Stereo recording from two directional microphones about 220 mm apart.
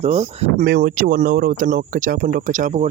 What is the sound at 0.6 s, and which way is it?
Speech, 45° right (ahead or behind).